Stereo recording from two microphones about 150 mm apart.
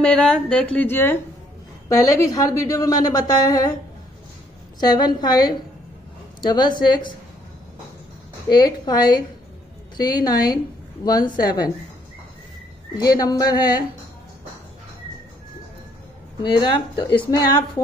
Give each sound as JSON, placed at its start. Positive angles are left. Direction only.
{"t": 0.0, "sound": "a woman's voice", "side_deg": 5}
{"t": 4.7, "sound": "a woman's voice", "side_deg": 25}
{"t": 8.5, "sound": "a woman's voice", "side_deg": 25}
{"t": 12.9, "sound": "a woman's voice", "side_deg": 25}
{"t": 16.4, "sound": "a woman's voice", "side_deg": 30}